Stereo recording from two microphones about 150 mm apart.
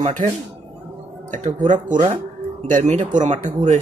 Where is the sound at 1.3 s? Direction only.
55° right (ahead or behind).